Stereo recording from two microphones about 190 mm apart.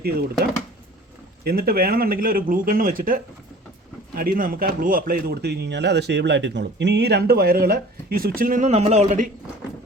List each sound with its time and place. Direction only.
1.5 s a man's voice: 50° right (ahead or behind)